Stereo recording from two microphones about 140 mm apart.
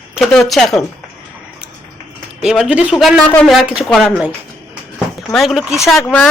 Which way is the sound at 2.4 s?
5° right (ahead or behind).